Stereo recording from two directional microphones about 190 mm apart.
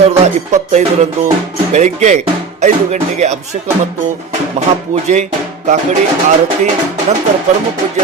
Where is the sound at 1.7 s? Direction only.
35° right (ahead or behind).